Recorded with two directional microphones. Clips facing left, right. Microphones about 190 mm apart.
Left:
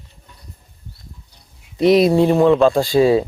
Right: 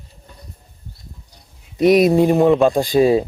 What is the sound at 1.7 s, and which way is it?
Speech, 20° right (ahead or behind).